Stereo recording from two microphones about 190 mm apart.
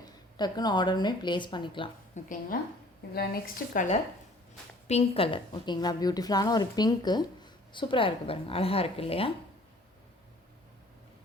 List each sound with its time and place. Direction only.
0.0 s speech: 20° left (ahead or behind)
2.1 s speech: 45° left (ahead or behind)
3.1 s a woman's voice: 55° left (ahead or behind); by 9.3 s 30° left (ahead or behind)